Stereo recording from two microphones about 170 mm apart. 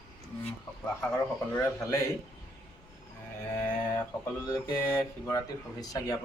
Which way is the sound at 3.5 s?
15° left (ahead or behind).